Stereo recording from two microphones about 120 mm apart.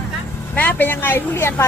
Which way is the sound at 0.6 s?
15° left (ahead or behind).